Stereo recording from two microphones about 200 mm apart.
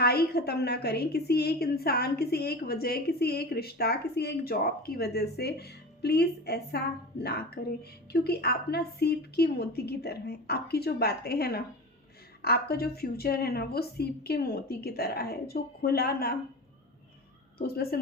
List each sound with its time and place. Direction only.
0.0 s a woman's voice: 50° left (ahead or behind)
17.6 s a woman's voice: 50° left (ahead or behind)